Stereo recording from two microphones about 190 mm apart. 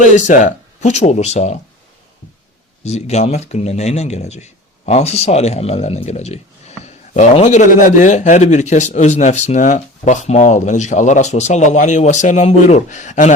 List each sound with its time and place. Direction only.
0.0 s speech: 40° left (ahead or behind)
2.8 s speech: 35° left (ahead or behind)